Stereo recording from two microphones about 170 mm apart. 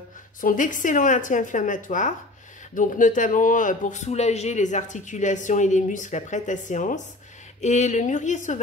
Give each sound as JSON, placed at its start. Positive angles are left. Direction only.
{"t": 0.4, "sound": "a man's voice", "side_deg": 50}